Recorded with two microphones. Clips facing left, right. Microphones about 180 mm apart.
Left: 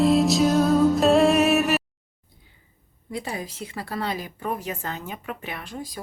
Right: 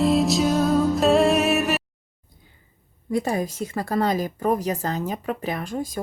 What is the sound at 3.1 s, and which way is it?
A woman's voice, 45° right (ahead or behind).